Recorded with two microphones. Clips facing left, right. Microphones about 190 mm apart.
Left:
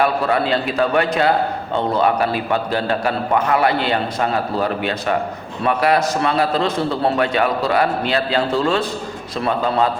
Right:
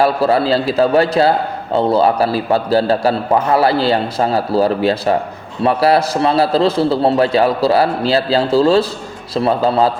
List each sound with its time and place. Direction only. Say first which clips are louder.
0.0 s a man's voice: right 4 dB; 30° right (ahead or behind)